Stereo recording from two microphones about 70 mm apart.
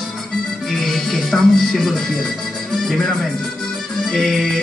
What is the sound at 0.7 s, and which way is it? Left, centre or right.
Speech, centre.